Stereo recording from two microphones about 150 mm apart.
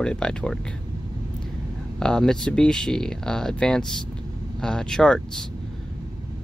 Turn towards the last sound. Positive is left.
turn(degrees=5)  # may be behind; listen again after turning